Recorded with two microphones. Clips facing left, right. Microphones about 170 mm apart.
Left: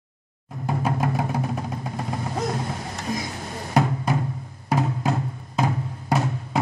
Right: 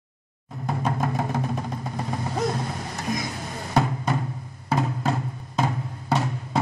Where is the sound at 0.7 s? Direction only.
5° left (ahead or behind).